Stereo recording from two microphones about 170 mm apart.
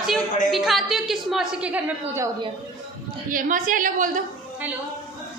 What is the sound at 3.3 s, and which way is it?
Speech, 50° right (ahead or behind).